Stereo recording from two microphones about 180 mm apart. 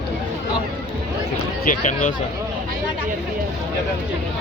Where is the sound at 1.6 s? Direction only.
45° left (ahead or behind).